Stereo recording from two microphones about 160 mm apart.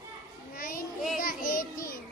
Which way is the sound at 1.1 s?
65° left (ahead or behind).